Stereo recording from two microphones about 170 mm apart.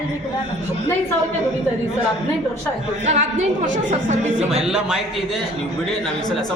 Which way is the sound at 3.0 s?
40° right (ahead or behind).